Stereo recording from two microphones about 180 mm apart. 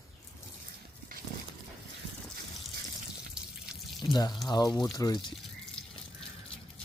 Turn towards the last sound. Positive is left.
turn(degrees=25)  # may be behind; listen again after turning